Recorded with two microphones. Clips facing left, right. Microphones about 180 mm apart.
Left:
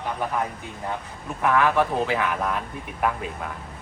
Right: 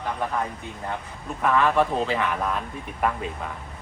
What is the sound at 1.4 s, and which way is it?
A man's voice, 5° left (ahead or behind).